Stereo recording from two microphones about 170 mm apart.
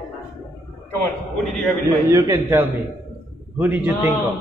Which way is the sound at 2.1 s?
15° right (ahead or behind).